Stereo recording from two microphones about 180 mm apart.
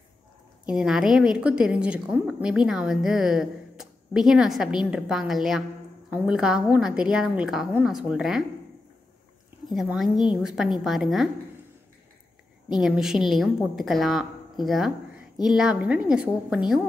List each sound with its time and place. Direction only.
0.7 s a woman's voice: 5° right (ahead or behind)
9.7 s a woman's voice: centre (ahead or behind)
10.0 s a woman's voice: 25° left (ahead or behind)
10.3 s a woman's voice: 5° right (ahead or behind)
12.8 s a woman's voice: 5° right (ahead or behind)